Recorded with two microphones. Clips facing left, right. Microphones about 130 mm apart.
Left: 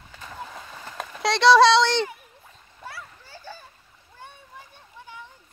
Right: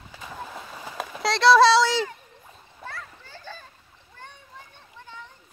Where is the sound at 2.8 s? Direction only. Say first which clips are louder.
Right 1 dB; 10° left (ahead or behind).